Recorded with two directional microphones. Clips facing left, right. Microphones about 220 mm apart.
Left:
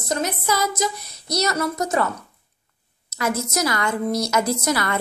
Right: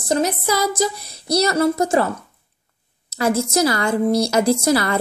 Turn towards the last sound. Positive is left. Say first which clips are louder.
# right 6 dB
turn(degrees=-30)  # may be behind; listen again after turning